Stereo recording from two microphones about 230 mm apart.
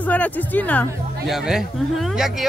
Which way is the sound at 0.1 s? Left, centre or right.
Centre.